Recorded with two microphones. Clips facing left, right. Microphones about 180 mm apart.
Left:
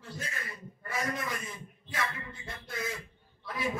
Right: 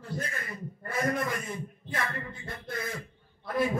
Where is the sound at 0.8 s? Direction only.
50° right (ahead or behind).